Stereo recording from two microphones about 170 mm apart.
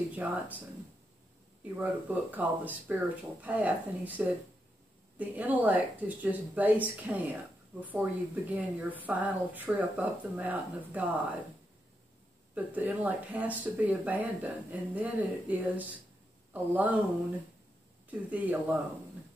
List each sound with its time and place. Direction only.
0.1 s speech: 10° right (ahead or behind)
1.6 s speech: 10° right (ahead or behind)
12.5 s speech: 10° right (ahead or behind)
18.1 s speech: 10° right (ahead or behind)